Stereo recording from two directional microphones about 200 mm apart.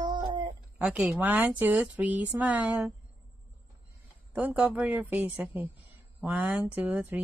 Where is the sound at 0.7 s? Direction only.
5° right (ahead or behind).